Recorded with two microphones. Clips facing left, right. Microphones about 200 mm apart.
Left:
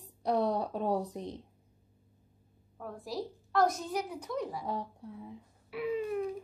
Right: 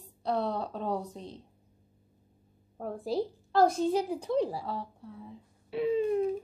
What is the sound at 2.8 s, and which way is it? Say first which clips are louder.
A woman's voice: right 7 dB; 30° right (ahead or behind).